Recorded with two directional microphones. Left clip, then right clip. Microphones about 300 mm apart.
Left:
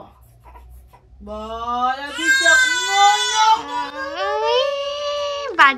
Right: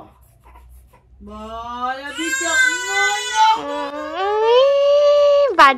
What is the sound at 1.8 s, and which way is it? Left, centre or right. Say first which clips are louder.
Speech: left 2 dB; centre.